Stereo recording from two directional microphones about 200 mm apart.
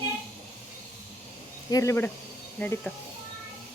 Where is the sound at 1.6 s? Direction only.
15° left (ahead or behind).